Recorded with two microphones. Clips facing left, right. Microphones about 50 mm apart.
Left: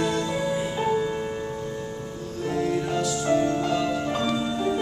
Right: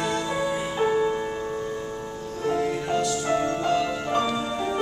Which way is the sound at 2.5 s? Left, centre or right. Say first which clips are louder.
Left 1 dB; centre.